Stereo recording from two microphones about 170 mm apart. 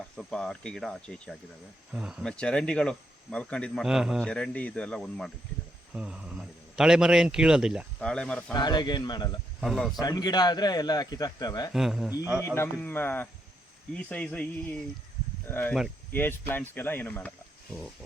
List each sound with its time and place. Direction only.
0.2 s a man's voice: 5° left (ahead or behind)
1.9 s speech: 5° right (ahead or behind)
2.2 s a man's voice: 5° left (ahead or behind)
3.8 s a man's voice: 5° right (ahead or behind)
5.9 s a man's voice: 5° right (ahead or behind)
8.0 s speech: 5° left (ahead or behind)
8.5 s a man's voice: 25° left (ahead or behind)
9.6 s speech: centre (ahead or behind)
10.0 s a man's voice: 25° left (ahead or behind)
11.7 s a man's voice: centre (ahead or behind)
12.5 s speech: 10° left (ahead or behind)
15.4 s speech: 10° left (ahead or behind)